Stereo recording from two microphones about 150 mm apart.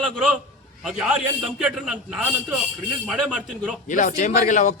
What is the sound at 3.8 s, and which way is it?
Speech, 60° left (ahead or behind).